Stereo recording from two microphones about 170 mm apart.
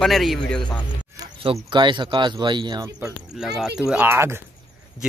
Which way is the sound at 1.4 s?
30° right (ahead or behind).